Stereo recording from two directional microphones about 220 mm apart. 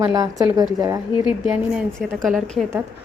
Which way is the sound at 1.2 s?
5° right (ahead or behind).